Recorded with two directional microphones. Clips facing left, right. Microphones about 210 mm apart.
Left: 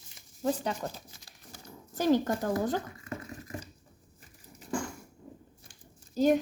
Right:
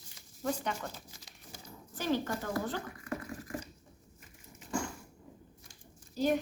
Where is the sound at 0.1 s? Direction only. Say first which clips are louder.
Left 5 dB; 30° left (ahead or behind).